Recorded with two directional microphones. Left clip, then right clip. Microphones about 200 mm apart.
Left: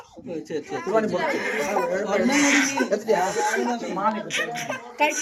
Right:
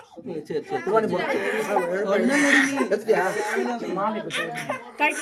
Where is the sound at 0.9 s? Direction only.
25° right (ahead or behind).